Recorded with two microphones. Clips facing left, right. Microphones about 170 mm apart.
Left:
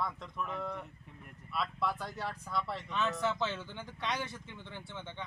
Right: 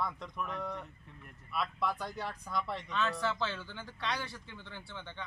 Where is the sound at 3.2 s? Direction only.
20° left (ahead or behind).